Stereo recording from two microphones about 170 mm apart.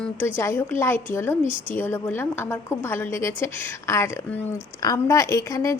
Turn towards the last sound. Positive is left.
turn(degrees=20)  # may be behind; listen again after turning